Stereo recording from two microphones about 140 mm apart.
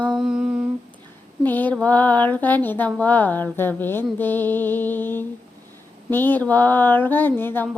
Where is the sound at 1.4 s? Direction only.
15° left (ahead or behind).